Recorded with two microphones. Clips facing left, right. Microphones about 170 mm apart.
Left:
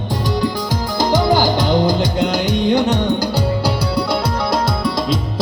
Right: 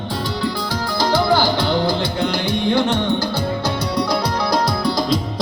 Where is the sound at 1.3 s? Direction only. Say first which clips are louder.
Left 3 dB; 45° left (ahead or behind).